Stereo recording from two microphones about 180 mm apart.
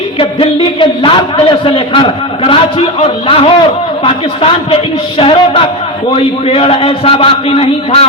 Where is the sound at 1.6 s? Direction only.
30° left (ahead or behind).